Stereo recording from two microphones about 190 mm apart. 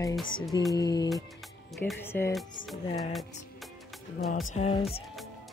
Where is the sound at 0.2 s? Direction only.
25° left (ahead or behind).